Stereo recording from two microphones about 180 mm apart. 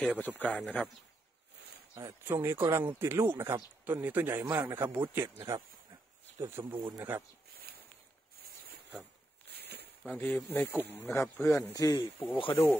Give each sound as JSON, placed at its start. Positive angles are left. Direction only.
{"t": 0.0, "sound": "speech", "side_deg": 5}
{"t": 2.0, "sound": "speech", "side_deg": -15}
{"t": 6.4, "sound": "speech", "side_deg": -20}
{"t": 7.0, "sound": "speech", "side_deg": -10}
{"t": 9.5, "sound": "walk", "side_deg": -60}
{"t": 10.0, "sound": "speech", "side_deg": 10}